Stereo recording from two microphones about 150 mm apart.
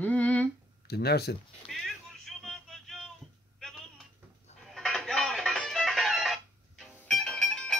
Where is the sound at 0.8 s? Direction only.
90° left.